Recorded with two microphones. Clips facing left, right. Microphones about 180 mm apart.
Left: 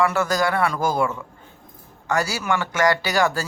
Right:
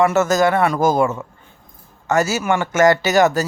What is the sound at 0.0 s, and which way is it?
Speech, 25° right (ahead or behind).